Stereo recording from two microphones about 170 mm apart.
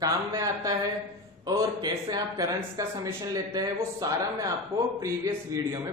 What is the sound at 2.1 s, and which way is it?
Speech, 20° right (ahead or behind).